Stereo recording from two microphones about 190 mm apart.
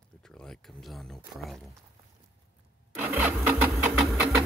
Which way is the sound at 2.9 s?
10° right (ahead or behind).